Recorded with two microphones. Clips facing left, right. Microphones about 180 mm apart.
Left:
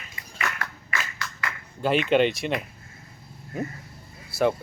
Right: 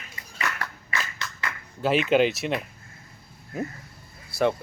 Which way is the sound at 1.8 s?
Centre (ahead or behind).